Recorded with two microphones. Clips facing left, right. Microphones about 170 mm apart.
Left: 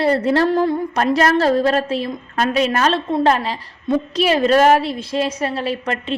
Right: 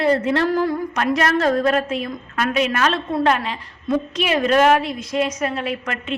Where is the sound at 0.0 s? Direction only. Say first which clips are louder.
Left 2 dB; 35° left (ahead or behind).